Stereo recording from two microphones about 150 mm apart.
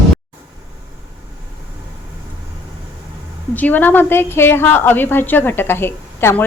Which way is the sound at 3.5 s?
10° left (ahead or behind).